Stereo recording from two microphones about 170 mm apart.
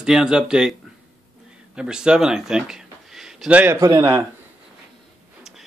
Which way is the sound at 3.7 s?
20° right (ahead or behind).